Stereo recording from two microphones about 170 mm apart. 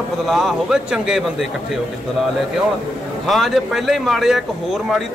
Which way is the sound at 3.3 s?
Centre (ahead or behind).